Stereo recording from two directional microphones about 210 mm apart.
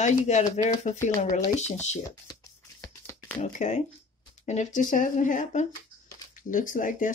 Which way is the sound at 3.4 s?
35° left (ahead or behind).